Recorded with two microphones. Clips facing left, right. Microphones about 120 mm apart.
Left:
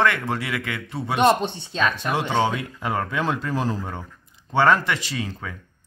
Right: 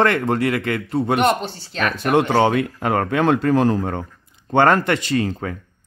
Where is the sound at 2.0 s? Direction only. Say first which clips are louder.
Right 11 dB; 60° right (ahead or behind).